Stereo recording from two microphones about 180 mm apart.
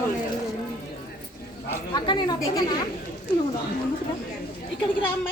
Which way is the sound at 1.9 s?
25° left (ahead or behind).